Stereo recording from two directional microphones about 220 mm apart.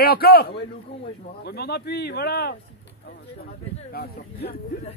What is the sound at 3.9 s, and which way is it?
Speech, 45° left (ahead or behind).